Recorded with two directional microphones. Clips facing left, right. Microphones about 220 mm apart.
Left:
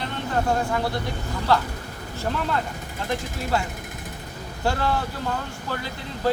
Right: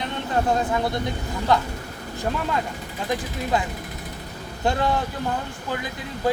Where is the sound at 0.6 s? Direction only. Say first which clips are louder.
Right 2 dB; 20° right (ahead or behind).